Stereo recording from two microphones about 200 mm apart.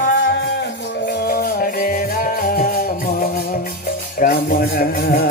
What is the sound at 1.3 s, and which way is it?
Music, 50° left (ahead or behind).